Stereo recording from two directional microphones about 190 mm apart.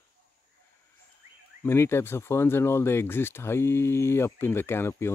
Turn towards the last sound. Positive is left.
turn(degrees=15)  # may be behind; listen again after turning